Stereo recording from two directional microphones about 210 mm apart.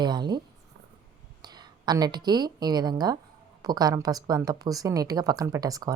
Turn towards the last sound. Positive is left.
turn(degrees=-15)  # may be behind; listen again after turning